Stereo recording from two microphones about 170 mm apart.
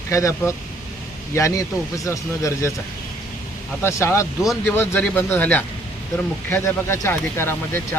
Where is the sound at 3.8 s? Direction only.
15° left (ahead or behind).